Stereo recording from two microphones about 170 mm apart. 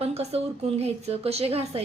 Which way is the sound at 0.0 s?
40° right (ahead or behind).